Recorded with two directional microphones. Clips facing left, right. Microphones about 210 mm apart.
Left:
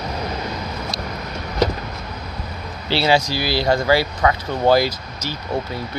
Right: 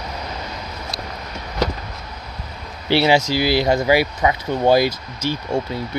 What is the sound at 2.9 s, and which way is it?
Speech, 20° right (ahead or behind).